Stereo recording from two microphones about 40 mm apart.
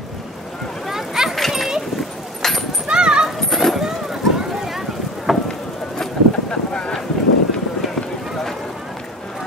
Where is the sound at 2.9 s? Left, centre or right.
Centre.